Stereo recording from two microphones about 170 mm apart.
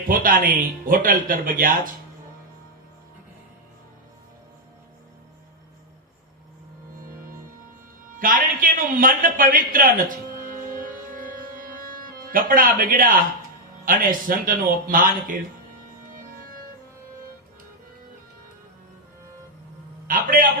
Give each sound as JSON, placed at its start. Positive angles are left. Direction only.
{"t": 0.1, "sound": "speech", "side_deg": -55}
{"t": 8.2, "sound": "a sound", "side_deg": -55}
{"t": 13.8, "sound": "speech", "side_deg": -55}
{"t": 20.1, "sound": "speech", "side_deg": -55}